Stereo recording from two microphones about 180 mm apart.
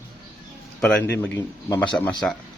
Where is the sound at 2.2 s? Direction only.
5° left (ahead or behind).